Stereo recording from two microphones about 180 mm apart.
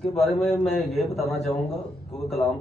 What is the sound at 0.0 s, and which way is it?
Speech, centre (ahead or behind).